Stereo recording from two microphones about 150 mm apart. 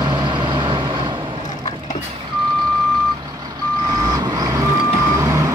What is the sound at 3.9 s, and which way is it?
Vehicle, 25° right (ahead or behind).